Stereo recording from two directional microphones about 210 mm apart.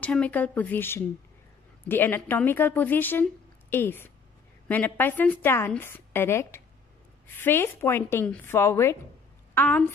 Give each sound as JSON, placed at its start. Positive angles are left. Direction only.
{"t": 0.0, "sound": "a woman's voice", "side_deg": 5}